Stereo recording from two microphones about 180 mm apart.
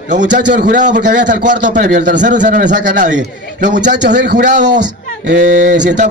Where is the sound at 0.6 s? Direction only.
45° right (ahead or behind).